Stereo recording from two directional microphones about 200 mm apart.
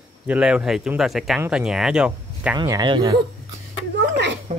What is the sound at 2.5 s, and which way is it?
Speech, 20° right (ahead or behind).